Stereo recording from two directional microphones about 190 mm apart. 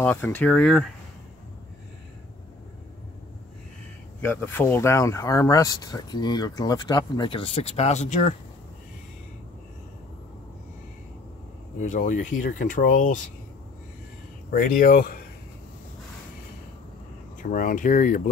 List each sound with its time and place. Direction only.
0.0 s speech: 10° left (ahead or behind)
4.2 s speech: 10° left (ahead or behind); by 8.4 s 40° left (ahead or behind)
11.8 s speech: 40° left (ahead or behind)
14.5 s speech: 45° left (ahead or behind)
17.4 s speech: 45° left (ahead or behind)